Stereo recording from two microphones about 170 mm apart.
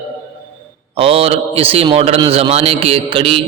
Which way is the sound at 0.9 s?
35° right (ahead or behind).